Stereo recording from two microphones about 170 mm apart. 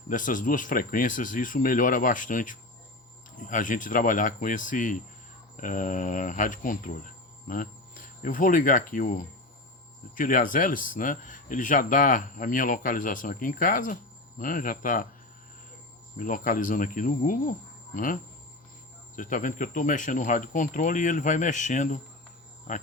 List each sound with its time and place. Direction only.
0.1 s speech: 50° left (ahead or behind)
16.1 s speech: 50° left (ahead or behind)